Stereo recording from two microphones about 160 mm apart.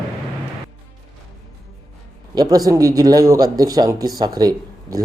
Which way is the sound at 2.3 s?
25° right (ahead or behind).